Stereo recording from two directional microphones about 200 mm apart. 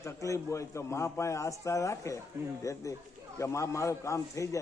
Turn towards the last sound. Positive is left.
turn(degrees=15)  # may be behind; listen again after turning